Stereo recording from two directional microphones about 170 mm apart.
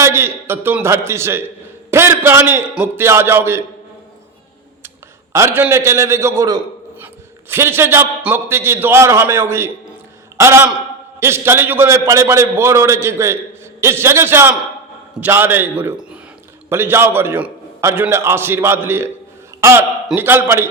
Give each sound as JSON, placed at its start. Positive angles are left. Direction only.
{"t": 0.0, "sound": "a man's voice", "side_deg": -15}
{"t": 5.3, "sound": "a man's voice", "side_deg": -15}
{"t": 20.1, "sound": "a man's voice", "side_deg": -10}